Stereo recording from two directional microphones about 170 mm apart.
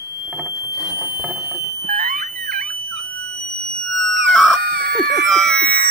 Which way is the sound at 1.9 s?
55° right (ahead or behind).